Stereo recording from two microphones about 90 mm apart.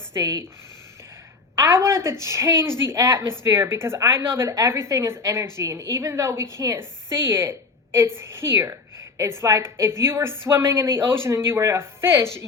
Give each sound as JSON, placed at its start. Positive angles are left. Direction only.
{"t": 0.1, "sound": "a woman's voice", "side_deg": -35}
{"t": 1.5, "sound": "a woman's voice", "side_deg": -30}